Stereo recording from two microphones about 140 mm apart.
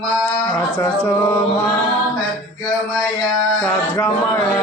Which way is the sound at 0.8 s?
15° left (ahead or behind).